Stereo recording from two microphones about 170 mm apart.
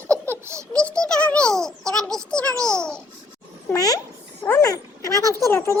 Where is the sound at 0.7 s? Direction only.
5° left (ahead or behind).